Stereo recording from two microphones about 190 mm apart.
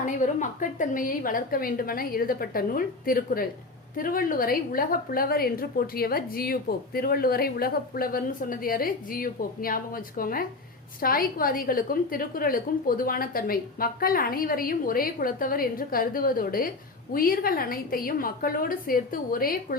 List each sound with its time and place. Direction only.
0.0 s a woman's voice: 40° left (ahead or behind)